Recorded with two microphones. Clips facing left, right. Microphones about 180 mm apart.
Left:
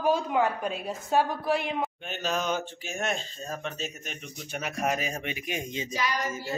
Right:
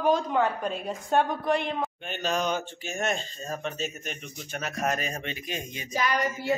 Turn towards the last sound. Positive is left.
turn(degrees=-55)  # may be behind; listen again after turning